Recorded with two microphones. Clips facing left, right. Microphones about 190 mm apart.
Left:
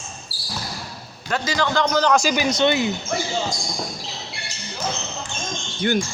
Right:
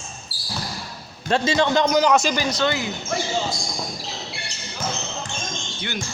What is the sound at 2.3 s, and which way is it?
Speech, 20° left (ahead or behind).